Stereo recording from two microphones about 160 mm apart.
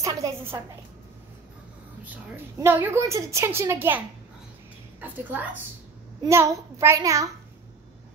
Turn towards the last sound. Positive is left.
turn(degrees=-20)  # may be behind; listen again after turning